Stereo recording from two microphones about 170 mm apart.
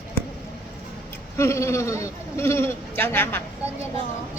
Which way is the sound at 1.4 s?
15° left (ahead or behind).